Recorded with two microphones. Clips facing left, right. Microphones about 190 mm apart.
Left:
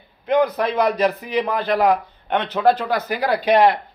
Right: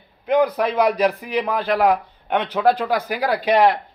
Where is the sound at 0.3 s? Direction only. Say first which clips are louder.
Even; 10° right (ahead or behind).